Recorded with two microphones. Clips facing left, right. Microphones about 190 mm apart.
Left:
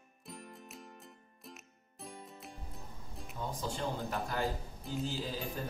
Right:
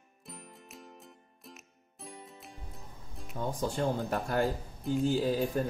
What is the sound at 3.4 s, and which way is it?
Speech, 55° right (ahead or behind).